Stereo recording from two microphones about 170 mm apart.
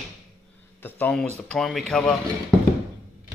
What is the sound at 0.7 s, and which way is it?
Speech, 10° left (ahead or behind).